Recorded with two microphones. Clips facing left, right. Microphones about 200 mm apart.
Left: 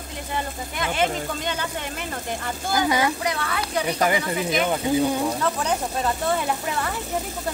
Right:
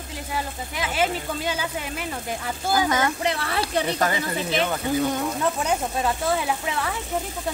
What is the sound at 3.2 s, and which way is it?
Speech, 30° right (ahead or behind).